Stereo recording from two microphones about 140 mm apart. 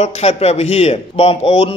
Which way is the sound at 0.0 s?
50° left (ahead or behind).